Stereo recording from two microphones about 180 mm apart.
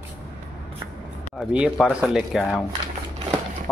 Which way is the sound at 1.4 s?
5° right (ahead or behind).